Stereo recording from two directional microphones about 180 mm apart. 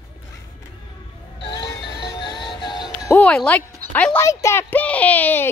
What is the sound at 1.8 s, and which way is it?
Music, 65° left (ahead or behind).